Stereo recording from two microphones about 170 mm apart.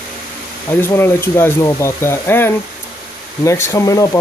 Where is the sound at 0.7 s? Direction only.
15° left (ahead or behind).